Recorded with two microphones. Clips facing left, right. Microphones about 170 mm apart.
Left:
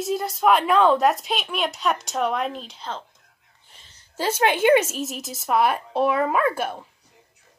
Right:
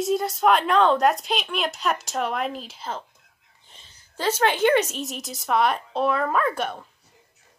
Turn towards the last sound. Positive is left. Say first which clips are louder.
# left 2 dB
turn(degrees=5)  # may be behind; listen again after turning